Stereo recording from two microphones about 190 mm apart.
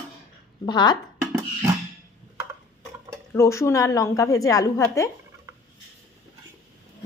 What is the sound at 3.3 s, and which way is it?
A woman's voice, 15° left (ahead or behind).